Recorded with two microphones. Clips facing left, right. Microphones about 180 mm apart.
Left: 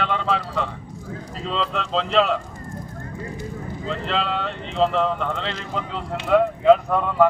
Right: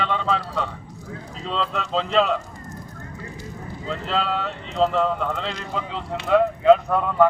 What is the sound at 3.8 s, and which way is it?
Speech, centre (ahead or behind).